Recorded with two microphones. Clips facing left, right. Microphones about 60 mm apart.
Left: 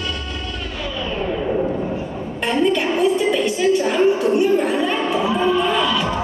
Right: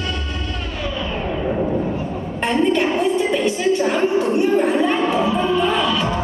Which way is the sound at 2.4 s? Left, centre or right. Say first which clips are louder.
Right 1 dB; right.